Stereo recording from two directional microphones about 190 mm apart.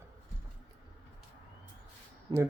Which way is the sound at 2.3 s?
20° right (ahead or behind).